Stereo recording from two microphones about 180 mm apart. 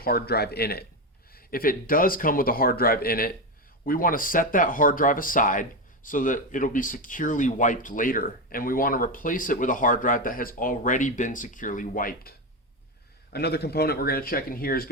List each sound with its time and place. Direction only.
0.0 s speech: 60° left (ahead or behind)
13.3 s speech: 65° left (ahead or behind)